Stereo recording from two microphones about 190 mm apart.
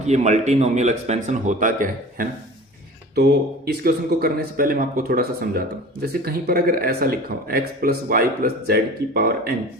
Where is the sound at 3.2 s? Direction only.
55° right (ahead or behind).